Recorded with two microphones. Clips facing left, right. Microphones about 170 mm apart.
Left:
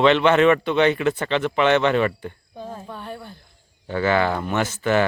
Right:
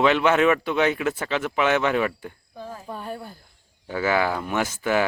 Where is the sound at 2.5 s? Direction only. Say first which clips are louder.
Left 1 dB; 20° left (ahead or behind).